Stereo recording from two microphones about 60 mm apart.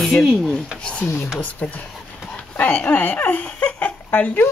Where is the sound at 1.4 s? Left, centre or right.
Left.